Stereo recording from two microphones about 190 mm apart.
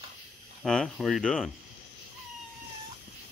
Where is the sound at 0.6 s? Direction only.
5° left (ahead or behind).